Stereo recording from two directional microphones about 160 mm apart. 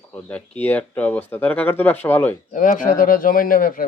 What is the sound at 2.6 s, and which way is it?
A man's voice, 55° left (ahead or behind).